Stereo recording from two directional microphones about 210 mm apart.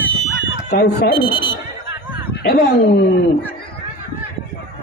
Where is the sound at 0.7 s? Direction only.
50° left (ahead or behind).